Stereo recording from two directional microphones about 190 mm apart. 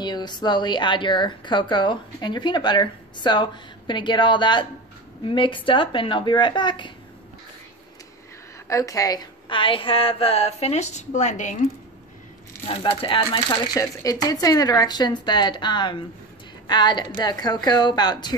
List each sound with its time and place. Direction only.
0.0 s a woman's voice: 20° left (ahead or behind)
8.6 s a woman's voice: 15° left (ahead or behind); by 11.5 s 40° left (ahead or behind)
12.6 s a woman's voice: 25° left (ahead or behind)